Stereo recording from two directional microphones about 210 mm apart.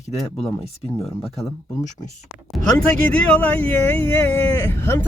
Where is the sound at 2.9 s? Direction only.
5° left (ahead or behind).